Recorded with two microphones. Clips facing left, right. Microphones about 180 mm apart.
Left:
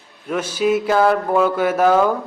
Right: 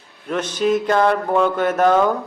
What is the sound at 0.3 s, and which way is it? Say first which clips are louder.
A man's voice: even; 10° left (ahead or behind).